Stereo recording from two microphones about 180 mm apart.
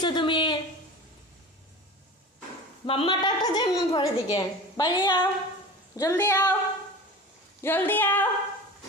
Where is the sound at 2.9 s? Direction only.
25° left (ahead or behind).